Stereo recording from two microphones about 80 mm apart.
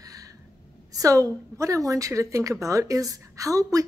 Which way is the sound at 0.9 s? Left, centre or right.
Right.